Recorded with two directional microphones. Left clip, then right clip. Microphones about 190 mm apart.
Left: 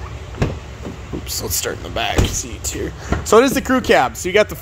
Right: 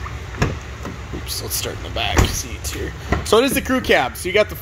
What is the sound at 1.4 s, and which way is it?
Speech, 35° left (ahead or behind).